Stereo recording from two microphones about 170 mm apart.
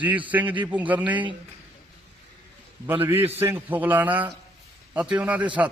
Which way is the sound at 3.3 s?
10° right (ahead or behind).